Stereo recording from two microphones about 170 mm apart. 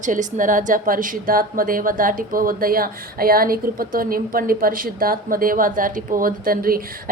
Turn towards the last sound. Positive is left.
turn(degrees=-60)  # may be behind; listen again after turning